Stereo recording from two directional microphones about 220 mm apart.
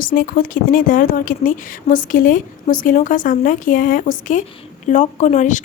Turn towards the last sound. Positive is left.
turn(degrees=35)  # may be behind; listen again after turning